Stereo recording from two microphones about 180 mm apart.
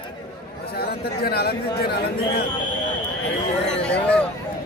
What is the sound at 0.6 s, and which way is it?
A man's voice, 60° left (ahead or behind).